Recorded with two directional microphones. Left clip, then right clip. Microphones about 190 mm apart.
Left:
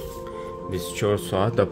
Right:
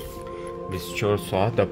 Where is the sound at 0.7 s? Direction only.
30° left (ahead or behind).